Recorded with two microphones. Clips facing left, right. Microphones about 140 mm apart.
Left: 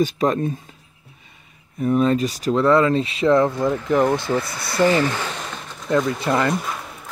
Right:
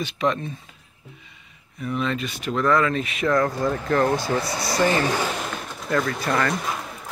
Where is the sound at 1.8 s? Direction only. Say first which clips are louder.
Left 8 dB; 40° left (ahead or behind); by 4.1 s 20° left (ahead or behind).